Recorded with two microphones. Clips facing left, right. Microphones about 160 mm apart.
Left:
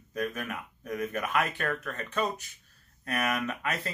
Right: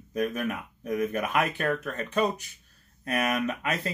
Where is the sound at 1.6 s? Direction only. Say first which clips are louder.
Right 4 dB; 35° right (ahead or behind).